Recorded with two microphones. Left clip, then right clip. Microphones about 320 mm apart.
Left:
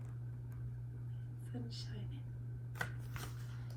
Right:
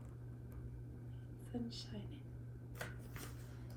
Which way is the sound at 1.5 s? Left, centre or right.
Centre.